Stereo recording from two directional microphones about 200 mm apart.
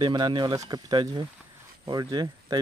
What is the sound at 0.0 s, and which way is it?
Speech, 25° right (ahead or behind).